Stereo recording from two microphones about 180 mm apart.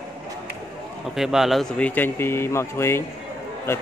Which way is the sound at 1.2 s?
Centre (ahead or behind).